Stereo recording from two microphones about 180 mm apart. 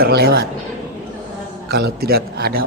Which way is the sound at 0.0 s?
60° right (ahead or behind).